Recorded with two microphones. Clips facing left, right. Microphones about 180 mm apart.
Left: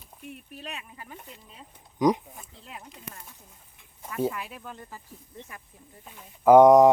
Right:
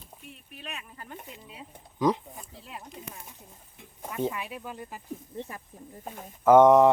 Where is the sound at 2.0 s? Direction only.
15° left (ahead or behind).